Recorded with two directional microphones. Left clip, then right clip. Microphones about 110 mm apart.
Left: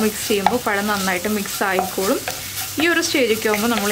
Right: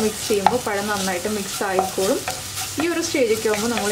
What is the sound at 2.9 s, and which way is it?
Sizzle, 35° left (ahead or behind).